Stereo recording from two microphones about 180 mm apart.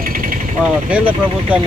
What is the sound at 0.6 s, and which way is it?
Speech, 5° right (ahead or behind).